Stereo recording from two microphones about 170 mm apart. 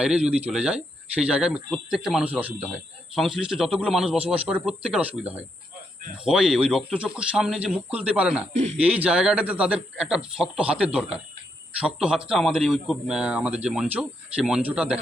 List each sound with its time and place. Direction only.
0.4 s speech: 5° right (ahead or behind)
8.5 s speech: 40° right (ahead or behind)
8.8 s speech: 10° right (ahead or behind)